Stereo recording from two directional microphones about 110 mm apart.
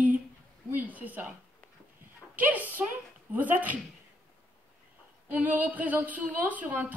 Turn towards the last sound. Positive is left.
turn(degrees=-15)  # may be behind; listen again after turning